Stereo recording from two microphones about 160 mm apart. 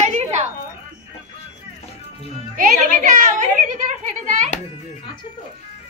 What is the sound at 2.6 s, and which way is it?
A woman's voice, 55° right (ahead or behind).